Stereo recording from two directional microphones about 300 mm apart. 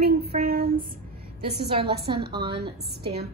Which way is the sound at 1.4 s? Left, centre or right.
Centre.